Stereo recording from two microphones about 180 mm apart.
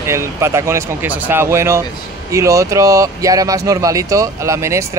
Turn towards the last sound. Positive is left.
turn(degrees=-15)  # may be behind; listen again after turning